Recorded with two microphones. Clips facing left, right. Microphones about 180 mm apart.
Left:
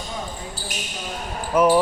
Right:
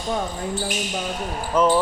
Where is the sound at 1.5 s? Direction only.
10° left (ahead or behind).